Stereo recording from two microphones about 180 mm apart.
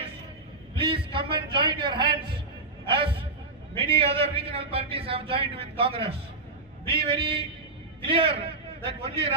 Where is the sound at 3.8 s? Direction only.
30° right (ahead or behind).